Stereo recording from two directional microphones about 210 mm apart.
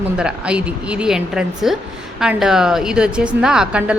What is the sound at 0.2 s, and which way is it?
A woman's voice, 5° right (ahead or behind).